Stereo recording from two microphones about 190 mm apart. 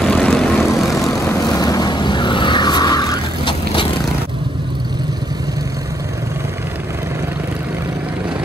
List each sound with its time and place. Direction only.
0.0 s vehicle: 5° left (ahead or behind)
1.3 s vehicle: 20° left (ahead or behind)